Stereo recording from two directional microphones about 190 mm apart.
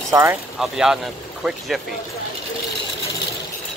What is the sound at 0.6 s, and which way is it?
Speech, centre (ahead or behind).